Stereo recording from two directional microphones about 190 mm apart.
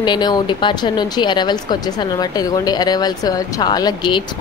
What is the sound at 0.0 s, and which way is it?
Speech, 25° left (ahead or behind).